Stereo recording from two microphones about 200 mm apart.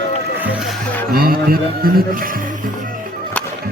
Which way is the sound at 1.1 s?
50° right (ahead or behind).